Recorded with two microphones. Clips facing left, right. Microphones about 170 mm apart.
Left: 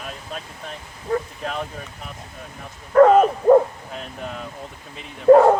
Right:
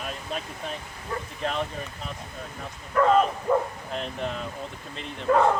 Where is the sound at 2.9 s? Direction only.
55° left (ahead or behind).